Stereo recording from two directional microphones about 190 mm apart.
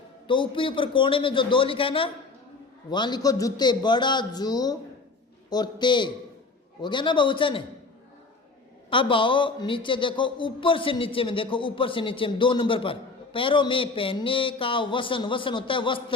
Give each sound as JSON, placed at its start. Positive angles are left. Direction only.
{"t": 0.3, "sound": "a man's voice", "side_deg": 25}
{"t": 8.9, "sound": "a man's voice", "side_deg": 25}